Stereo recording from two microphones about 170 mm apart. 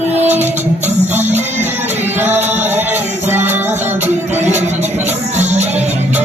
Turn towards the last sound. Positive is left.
turn(degrees=-40)  # may be behind; listen again after turning